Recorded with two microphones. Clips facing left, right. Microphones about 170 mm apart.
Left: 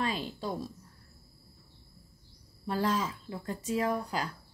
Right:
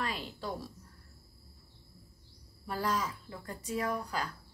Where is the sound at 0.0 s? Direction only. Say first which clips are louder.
Left 4 dB; 25° left (ahead or behind).